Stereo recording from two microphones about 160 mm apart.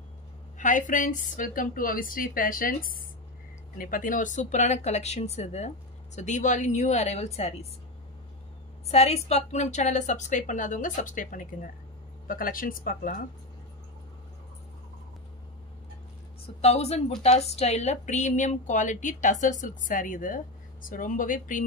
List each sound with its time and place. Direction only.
0.6 s a woman's voice: 50° left (ahead or behind)
8.8 s a woman's voice: 40° left (ahead or behind); by 13.2 s 60° left (ahead or behind)
16.6 s a woman's voice: 40° left (ahead or behind)